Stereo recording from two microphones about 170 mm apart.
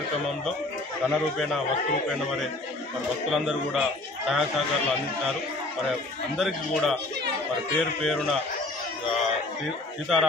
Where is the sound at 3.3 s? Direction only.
Centre (ahead or behind).